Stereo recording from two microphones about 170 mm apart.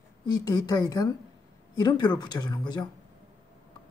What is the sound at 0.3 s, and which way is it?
Speech, 20° left (ahead or behind).